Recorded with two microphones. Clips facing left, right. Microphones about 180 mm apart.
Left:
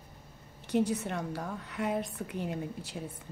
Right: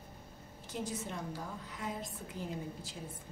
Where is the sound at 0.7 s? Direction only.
65° left (ahead or behind).